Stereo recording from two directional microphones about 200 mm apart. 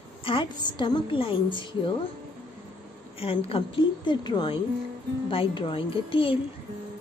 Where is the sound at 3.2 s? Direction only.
30° left (ahead or behind).